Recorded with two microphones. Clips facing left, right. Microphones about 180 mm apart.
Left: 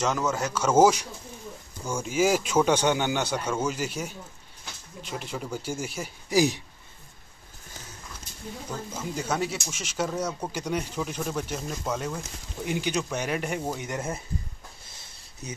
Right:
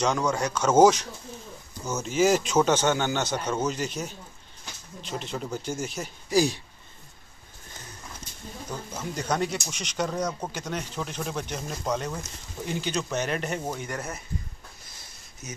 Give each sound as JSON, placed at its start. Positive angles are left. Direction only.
{"t": 0.0, "sound": "speech", "side_deg": 5}
{"t": 5.1, "sound": "speech", "side_deg": 10}
{"t": 9.0, "sound": "speech", "side_deg": 10}
{"t": 13.7, "sound": "speech", "side_deg": 20}
{"t": 15.4, "sound": "speech", "side_deg": 35}